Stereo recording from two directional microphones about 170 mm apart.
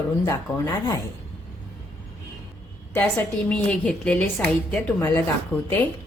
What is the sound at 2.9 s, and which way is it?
A woman's voice, 10° left (ahead or behind).